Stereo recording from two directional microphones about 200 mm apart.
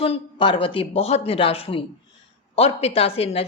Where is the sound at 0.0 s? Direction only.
25° left (ahead or behind).